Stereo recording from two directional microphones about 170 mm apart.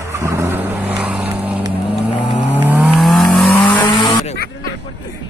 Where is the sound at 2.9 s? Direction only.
Centre (ahead or behind).